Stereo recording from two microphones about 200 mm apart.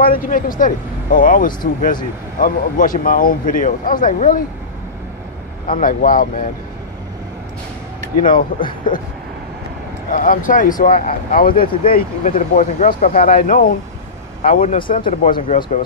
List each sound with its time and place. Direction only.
0.0 s speech: 45° left (ahead or behind)
5.7 s speech: 45° left (ahead or behind)
8.6 s speech: 25° left (ahead or behind)
10.1 s speech: 40° left (ahead or behind)